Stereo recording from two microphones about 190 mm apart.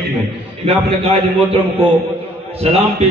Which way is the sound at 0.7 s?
30° right (ahead or behind).